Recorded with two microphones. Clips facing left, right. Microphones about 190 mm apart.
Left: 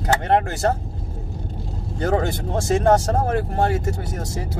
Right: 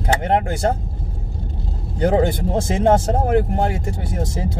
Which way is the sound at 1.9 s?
20° right (ahead or behind).